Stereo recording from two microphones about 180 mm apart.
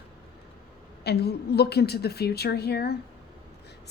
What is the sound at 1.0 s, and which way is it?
A woman's voice, 65° left (ahead or behind).